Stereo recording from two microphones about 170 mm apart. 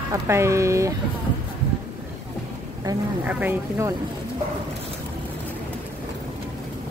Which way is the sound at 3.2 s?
10° right (ahead or behind).